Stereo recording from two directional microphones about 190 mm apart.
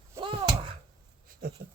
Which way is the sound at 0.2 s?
25° right (ahead or behind).